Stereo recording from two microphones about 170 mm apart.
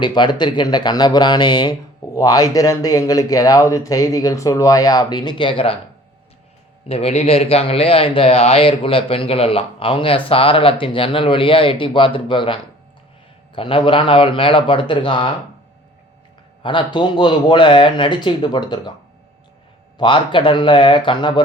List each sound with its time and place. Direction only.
0.0 s a man's voice: 25° left (ahead or behind)
6.8 s a man's voice: 35° left (ahead or behind)
13.6 s a man's voice: 30° left (ahead or behind)
16.6 s a man's voice: 25° left (ahead or behind)
20.0 s a man's voice: 30° left (ahead or behind)